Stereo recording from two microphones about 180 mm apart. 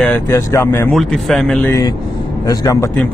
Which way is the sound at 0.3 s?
15° left (ahead or behind).